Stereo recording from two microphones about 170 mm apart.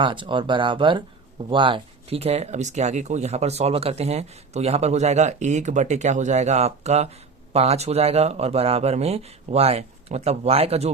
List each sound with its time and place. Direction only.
0.0 s speech: 30° right (ahead or behind)